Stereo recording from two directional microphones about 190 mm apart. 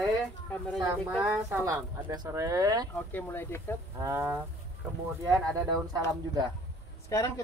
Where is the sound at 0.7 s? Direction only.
15° right (ahead or behind).